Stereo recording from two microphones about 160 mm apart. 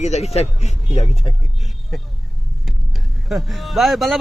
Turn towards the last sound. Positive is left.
turn(degrees=0)  # may be behind; listen again after turning